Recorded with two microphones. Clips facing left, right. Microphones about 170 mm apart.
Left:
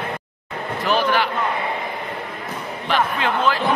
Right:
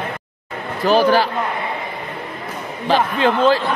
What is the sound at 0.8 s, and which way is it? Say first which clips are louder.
Mantra: right 6 dB; 35° right (ahead or behind).